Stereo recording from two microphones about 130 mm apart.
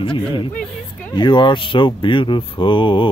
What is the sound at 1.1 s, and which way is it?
Speech, 35° left (ahead or behind).